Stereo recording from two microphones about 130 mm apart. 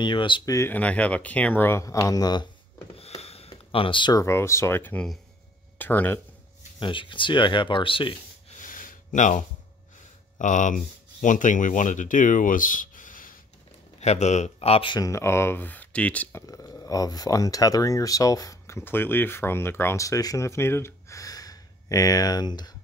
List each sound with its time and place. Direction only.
0.0 s speech: 40° left (ahead or behind)
0.5 s speech: 20° left (ahead or behind)
2.9 s a sound: 50° left (ahead or behind)
4.2 s speech: 20° left (ahead or behind)
6.8 s speech: 40° left (ahead or behind)
8.5 s a sound: 85° left
9.9 s speech: 75° left (ahead or behind); by 13.4 s 90° left
13.9 s speech: 55° left (ahead or behind)
15.0 s speech: 25° left (ahead or behind)
16.4 s speech: 25° left (ahead or behind)